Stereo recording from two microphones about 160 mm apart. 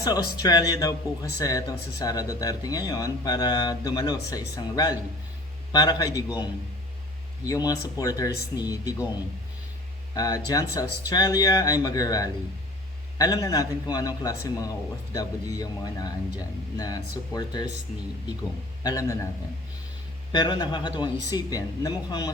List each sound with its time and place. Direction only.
0.0 s speech: 25° left (ahead or behind)
10.2 s speech: 20° left (ahead or behind)
18.8 s speech: 20° left (ahead or behind)
20.3 s speech: 25° left (ahead or behind)